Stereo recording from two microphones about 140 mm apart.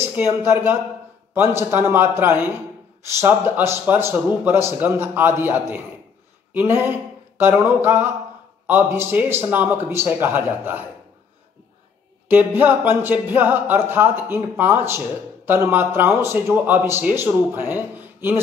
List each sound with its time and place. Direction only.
0.0 s speech: 15° right (ahead or behind)
1.3 s music: 20° right (ahead or behind)
6.5 s a sound: 15° right (ahead or behind)
8.6 s music: 15° right (ahead or behind)
12.3 s music: 15° right (ahead or behind)